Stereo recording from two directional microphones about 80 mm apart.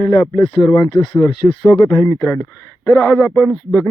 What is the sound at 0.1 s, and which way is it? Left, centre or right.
Mantra, left.